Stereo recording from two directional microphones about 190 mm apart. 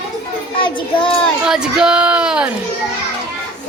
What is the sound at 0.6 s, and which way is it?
Child singing, 25° left (ahead or behind).